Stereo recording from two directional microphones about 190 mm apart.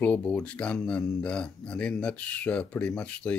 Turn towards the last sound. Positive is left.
turn(degrees=5)  # may be behind; listen again after turning